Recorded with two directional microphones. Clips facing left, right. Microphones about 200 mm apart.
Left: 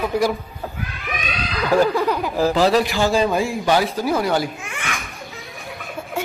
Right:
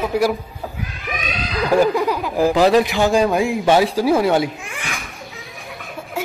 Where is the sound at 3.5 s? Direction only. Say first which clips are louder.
Right 4 dB; 25° right (ahead or behind).